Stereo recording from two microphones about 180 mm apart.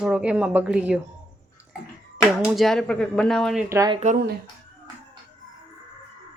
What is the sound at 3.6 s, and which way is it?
Speech, 15° right (ahead or behind).